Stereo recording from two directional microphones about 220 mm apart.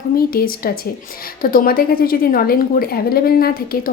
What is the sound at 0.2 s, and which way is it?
A woman's voice, 45° left (ahead or behind).